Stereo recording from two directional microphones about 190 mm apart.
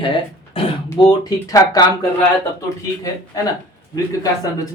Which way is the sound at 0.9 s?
20° left (ahead or behind).